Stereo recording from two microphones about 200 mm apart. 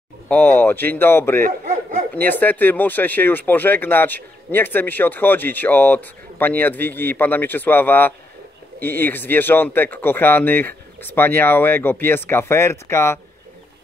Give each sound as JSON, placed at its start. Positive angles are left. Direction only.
{"t": 0.3, "sound": "speech", "side_deg": 10}
{"t": 1.4, "sound": "speech", "side_deg": -40}
{"t": 2.1, "sound": "speech", "side_deg": 10}